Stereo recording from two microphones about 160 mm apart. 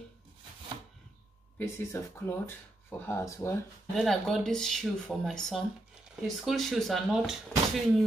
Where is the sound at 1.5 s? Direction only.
15° left (ahead or behind).